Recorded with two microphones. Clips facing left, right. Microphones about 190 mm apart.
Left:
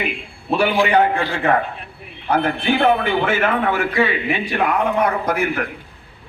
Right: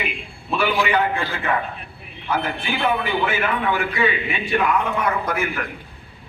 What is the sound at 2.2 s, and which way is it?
A man's voice, 55° left (ahead or behind).